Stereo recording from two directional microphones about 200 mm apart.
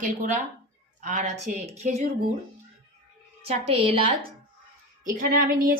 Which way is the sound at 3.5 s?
30° right (ahead or behind).